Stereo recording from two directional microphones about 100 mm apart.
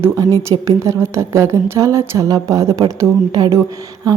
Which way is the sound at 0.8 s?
25° right (ahead or behind).